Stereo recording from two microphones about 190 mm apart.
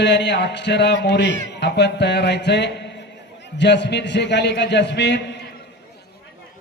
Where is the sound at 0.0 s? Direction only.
65° left (ahead or behind).